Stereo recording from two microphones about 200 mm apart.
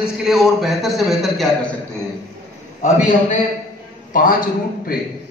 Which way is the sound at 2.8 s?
40° left (ahead or behind).